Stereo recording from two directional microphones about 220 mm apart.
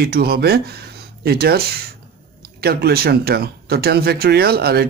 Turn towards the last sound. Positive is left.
turn(degrees=-45)  # may be behind; listen again after turning